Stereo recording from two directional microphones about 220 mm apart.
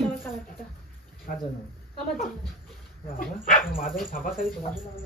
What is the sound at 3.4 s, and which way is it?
Speech, 40° left (ahead or behind).